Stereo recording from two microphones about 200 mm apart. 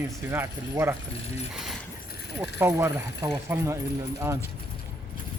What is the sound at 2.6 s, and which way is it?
Speech, 10° right (ahead or behind).